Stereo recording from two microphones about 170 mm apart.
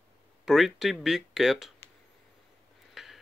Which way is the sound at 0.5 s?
Centre (ahead or behind).